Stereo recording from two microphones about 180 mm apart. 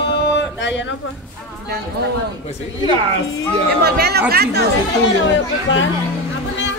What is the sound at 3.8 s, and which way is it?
Speech, 60° right (ahead or behind).